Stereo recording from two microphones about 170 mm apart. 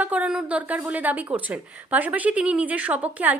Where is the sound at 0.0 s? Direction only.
10° right (ahead or behind).